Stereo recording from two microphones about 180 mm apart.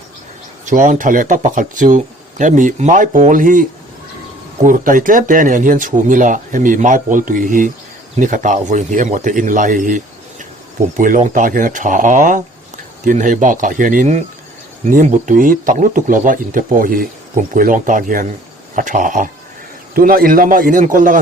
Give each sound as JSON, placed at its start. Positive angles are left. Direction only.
{"t": 0.6, "sound": "speech", "side_deg": -45}